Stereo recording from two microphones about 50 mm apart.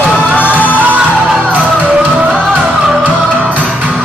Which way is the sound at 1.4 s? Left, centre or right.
Right.